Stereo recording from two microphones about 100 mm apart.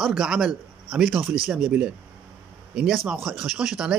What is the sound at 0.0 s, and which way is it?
Speech, 5° right (ahead or behind).